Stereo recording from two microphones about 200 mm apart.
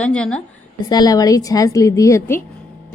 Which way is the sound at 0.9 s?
20° left (ahead or behind).